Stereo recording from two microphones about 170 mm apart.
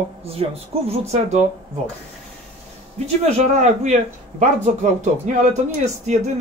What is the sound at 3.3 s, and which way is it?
Speech, 40° right (ahead or behind).